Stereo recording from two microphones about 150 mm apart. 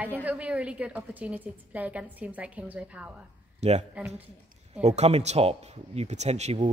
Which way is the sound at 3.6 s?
45° right (ahead or behind).